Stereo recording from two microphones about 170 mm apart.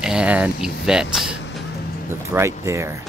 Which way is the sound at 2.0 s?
15° right (ahead or behind).